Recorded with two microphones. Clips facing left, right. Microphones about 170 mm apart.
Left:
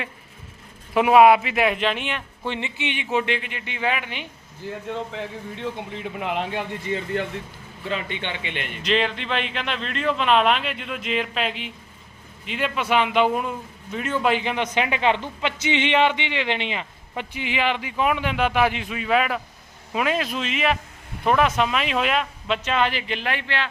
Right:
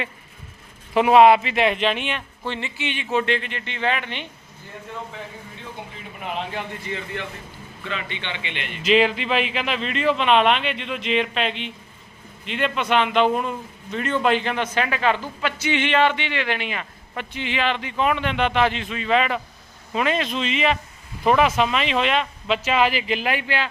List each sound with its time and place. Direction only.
0.9 s speech: 5° left (ahead or behind)
2.5 s a man's voice: 20° left (ahead or behind)
5.1 s speech: 80° left
6.9 s a man's voice: 40° left (ahead or behind)
8.8 s a man's voice: 5° right (ahead or behind)